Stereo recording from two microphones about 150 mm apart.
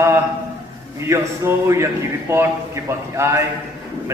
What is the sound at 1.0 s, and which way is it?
A man's voice, 20° right (ahead or behind).